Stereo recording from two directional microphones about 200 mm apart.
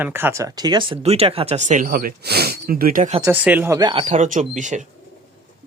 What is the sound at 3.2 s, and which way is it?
Speech, 10° right (ahead or behind).